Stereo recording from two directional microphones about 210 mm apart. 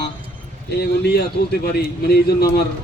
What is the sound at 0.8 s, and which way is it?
A man's voice, 50° left (ahead or behind).